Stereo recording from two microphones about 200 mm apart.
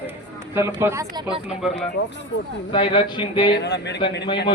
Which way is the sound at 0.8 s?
15° right (ahead or behind).